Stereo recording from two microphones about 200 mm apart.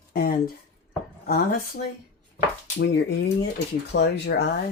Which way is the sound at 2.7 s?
60° left (ahead or behind).